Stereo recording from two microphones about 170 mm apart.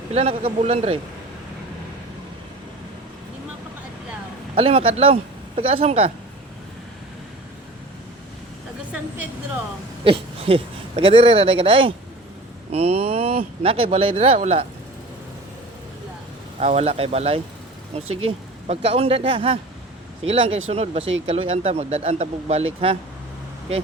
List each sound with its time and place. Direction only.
0.1 s speech: 35° right (ahead or behind)
4.5 s speech: 35° right (ahead or behind)
10.0 s speech: 35° right (ahead or behind)
16.6 s speech: 35° right (ahead or behind)